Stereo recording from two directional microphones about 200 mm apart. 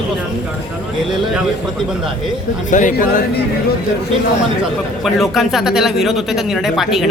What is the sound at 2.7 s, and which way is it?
Speech, 40° left (ahead or behind).